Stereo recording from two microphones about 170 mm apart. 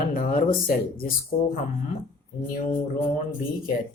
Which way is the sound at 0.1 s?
55° left (ahead or behind).